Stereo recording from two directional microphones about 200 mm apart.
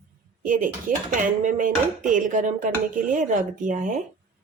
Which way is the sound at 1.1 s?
40° right (ahead or behind).